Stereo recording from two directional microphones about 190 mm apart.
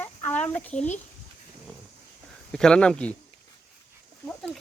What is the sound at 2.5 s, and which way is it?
Speech, 5° left (ahead or behind).